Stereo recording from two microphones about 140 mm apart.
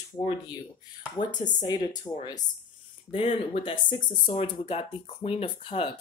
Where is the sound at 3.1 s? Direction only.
40° left (ahead or behind).